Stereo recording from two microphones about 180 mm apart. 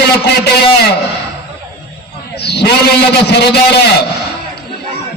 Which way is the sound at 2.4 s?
65° left (ahead or behind).